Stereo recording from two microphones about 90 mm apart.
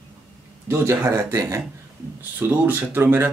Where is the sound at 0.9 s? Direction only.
30° right (ahead or behind).